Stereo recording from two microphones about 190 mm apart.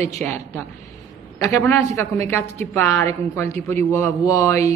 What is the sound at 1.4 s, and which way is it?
A man's voice, 15° left (ahead or behind).